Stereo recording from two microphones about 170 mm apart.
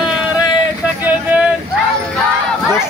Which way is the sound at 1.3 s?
10° right (ahead or behind).